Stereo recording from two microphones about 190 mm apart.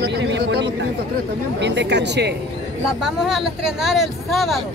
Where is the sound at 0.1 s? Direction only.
60° right (ahead or behind).